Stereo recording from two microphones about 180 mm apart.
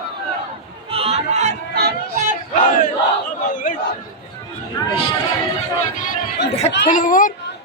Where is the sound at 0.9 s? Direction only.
30° right (ahead or behind).